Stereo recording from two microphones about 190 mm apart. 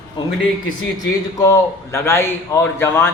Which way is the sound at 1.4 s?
15° left (ahead or behind).